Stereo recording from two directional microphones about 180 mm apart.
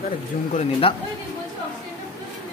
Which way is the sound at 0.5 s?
35° left (ahead or behind).